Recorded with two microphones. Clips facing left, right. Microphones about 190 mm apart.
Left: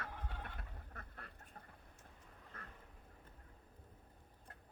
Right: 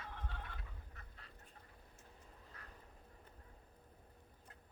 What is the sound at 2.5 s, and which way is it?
Duck, 50° left (ahead or behind).